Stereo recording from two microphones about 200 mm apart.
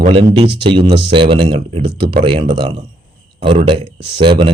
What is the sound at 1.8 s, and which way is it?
Speech, 55° right (ahead or behind).